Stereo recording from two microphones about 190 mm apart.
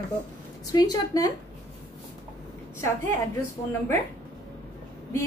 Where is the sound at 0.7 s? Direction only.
20° left (ahead or behind).